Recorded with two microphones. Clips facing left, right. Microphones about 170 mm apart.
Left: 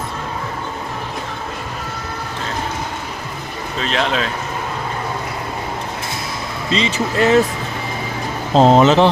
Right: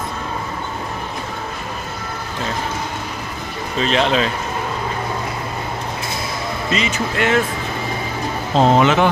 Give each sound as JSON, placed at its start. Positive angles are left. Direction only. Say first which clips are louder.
{"t": 3.8, "sound": "speech", "louder": "right 3 dB", "side_deg": 0}
{"t": 6.7, "sound": "speech", "louder": "left 3 dB", "side_deg": 30}
{"t": 8.5, "sound": "speech", "louder": "left 3 dB", "side_deg": 35}